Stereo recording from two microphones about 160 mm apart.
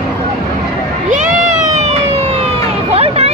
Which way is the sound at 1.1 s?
50° right (ahead or behind).